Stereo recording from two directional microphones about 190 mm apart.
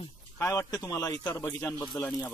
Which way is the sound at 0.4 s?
15° left (ahead or behind).